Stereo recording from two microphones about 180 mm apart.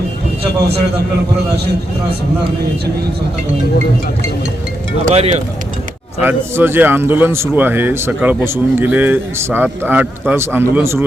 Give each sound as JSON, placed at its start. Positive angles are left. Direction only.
{"t": 5.0, "sound": "speech", "side_deg": -35}
{"t": 6.2, "sound": "a man's voice", "side_deg": -10}